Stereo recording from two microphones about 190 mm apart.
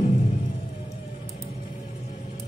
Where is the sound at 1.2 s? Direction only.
30° left (ahead or behind).